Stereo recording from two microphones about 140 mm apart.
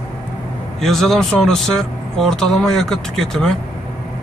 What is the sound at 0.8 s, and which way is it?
Speech, centre (ahead or behind).